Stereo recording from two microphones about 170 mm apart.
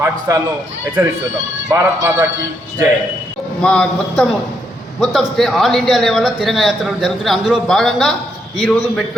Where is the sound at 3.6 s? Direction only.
5° left (ahead or behind).